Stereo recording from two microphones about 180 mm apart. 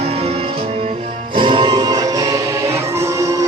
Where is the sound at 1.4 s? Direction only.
25° right (ahead or behind).